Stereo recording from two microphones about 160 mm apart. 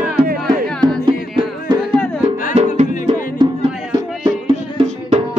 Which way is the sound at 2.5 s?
45° right (ahead or behind).